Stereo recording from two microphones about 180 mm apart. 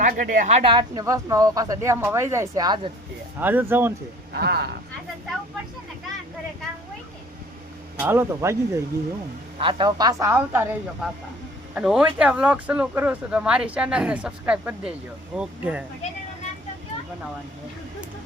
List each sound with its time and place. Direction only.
0.0 s speech: 50° right (ahead or behind); by 2.8 s 20° right (ahead or behind)
3.4 s speech: 10° right (ahead or behind)
4.4 s speech: 60° right (ahead or behind)
7.9 s speech: 10° right (ahead or behind)
9.6 s speech: 30° right (ahead or behind); by 15.8 s 5° right (ahead or behind)